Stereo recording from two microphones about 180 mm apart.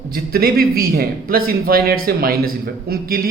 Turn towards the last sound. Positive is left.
turn(degrees=-55)  # may be behind; listen again after turning